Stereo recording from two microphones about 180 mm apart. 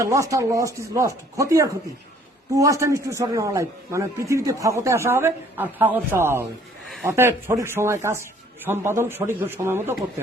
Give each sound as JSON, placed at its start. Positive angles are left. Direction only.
{"t": 0.0, "sound": "a man's voice", "side_deg": -15}